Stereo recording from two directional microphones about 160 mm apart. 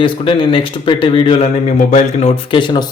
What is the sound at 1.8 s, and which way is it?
Speech, 50° left (ahead or behind).